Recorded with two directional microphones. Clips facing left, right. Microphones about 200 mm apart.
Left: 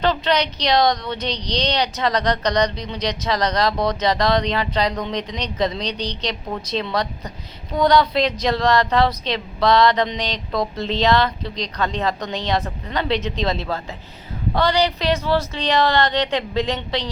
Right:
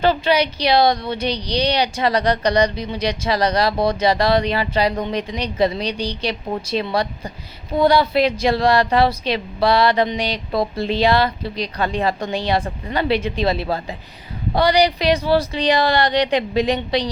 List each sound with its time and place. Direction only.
0.0 s speech: 10° right (ahead or behind)